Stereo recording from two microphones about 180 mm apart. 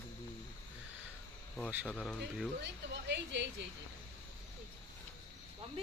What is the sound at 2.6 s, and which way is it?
Speech, 75° right (ahead or behind).